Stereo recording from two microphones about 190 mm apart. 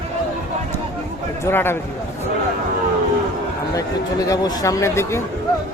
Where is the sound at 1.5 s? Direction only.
10° left (ahead or behind).